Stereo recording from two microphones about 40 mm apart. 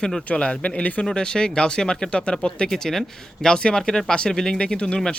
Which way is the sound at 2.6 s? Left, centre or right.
Centre.